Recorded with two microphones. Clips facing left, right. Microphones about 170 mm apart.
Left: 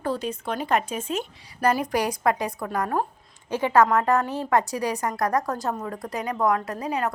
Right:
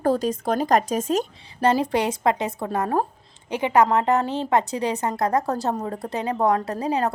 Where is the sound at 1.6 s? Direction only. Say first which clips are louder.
Right 3 dB; 25° right (ahead or behind).